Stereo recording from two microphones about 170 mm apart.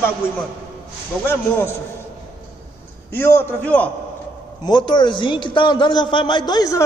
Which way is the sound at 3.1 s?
15° left (ahead or behind).